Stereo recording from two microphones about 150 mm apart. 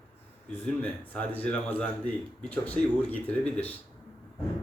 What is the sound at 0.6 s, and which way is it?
Speech, 10° left (ahead or behind).